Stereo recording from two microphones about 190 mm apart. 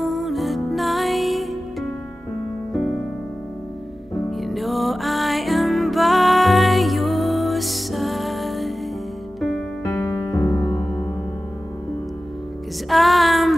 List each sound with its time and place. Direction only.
0.0 s music: centre (ahead or behind)
4.3 s music: centre (ahead or behind)
10.3 s music: 15° left (ahead or behind)
10.8 s music: 5° left (ahead or behind)
12.9 s music: centre (ahead or behind)